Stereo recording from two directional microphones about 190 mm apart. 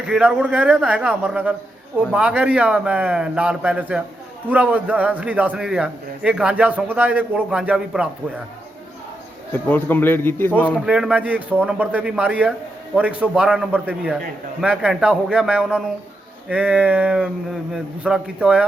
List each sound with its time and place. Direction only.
0.0 s a man's voice: 5° right (ahead or behind)
9.5 s a man's voice: 10° left (ahead or behind)
10.8 s a man's voice: 5° right (ahead or behind)